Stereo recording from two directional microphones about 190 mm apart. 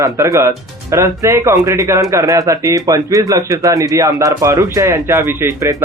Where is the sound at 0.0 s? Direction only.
15° right (ahead or behind).